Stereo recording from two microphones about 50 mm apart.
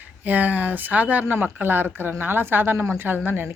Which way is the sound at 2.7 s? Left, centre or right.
Right.